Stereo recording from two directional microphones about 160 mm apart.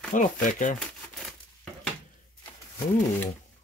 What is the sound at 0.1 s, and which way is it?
Speech, 55° left (ahead or behind).